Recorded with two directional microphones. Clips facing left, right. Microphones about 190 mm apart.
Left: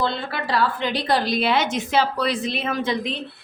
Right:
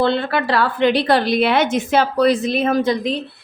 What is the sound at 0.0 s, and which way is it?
A woman's voice, 65° right (ahead or behind).